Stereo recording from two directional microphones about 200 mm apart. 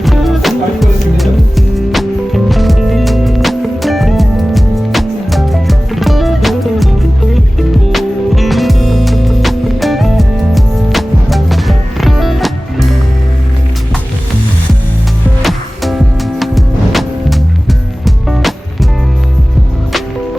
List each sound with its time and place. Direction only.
0.0 s music: centre (ahead or behind)
7.9 s music: centre (ahead or behind)
15.4 s music: centre (ahead or behind)